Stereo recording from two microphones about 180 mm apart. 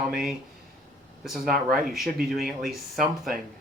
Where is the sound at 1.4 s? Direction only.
Centre (ahead or behind).